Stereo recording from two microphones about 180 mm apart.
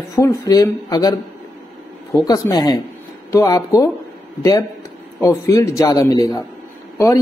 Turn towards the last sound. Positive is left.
turn(degrees=15)  # may be behind; listen again after turning